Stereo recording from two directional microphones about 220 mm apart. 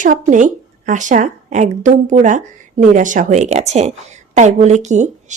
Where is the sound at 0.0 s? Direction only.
35° right (ahead or behind).